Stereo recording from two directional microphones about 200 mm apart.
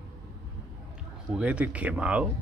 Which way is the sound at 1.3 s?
5° right (ahead or behind).